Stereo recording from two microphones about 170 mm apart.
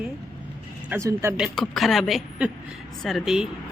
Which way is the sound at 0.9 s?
15° right (ahead or behind).